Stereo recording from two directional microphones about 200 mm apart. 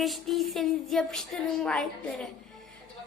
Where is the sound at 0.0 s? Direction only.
Centre (ahead or behind).